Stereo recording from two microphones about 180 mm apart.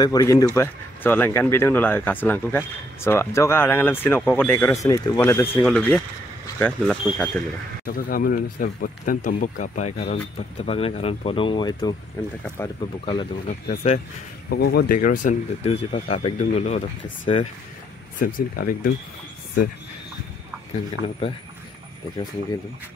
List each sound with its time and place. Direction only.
0.0 s speech: 20° left (ahead or behind)
7.8 s speech: 55° left (ahead or behind); by 12.7 s 15° left (ahead or behind)
13.0 s speech: 25° left (ahead or behind)
13.5 s speech: 35° left (ahead or behind)
14.5 s speech: 60° left (ahead or behind); by 17.5 s 35° left (ahead or behind)
18.2 s speech: 50° left (ahead or behind)
21.0 s speech: 25° right (ahead or behind)